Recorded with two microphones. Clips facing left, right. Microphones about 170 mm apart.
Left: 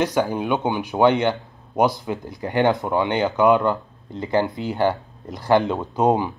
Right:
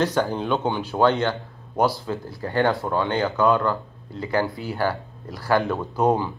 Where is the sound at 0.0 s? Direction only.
15° left (ahead or behind).